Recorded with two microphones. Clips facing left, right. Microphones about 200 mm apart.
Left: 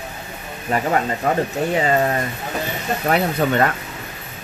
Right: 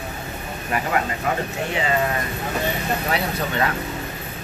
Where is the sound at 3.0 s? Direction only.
50° left (ahead or behind).